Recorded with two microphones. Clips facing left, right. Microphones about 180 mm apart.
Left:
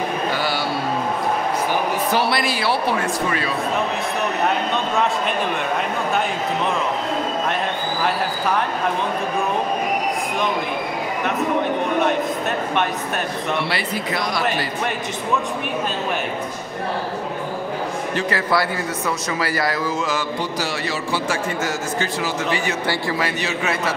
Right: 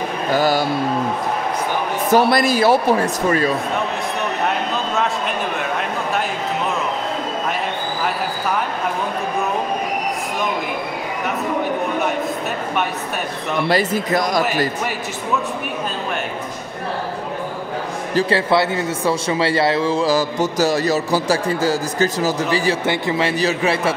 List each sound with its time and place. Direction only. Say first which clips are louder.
0.3 s mantra: right 6 dB; 45° right (ahead or behind)
2.0 s a man's voice: right 5 dB; 45° right (ahead or behind)
13.7 s a man's voice: right 6 dB; 45° right (ahead or behind)
18.1 s speech: right 6 dB; 25° right (ahead or behind)
22.8 s a man's voice: right 3 dB; 25° right (ahead or behind)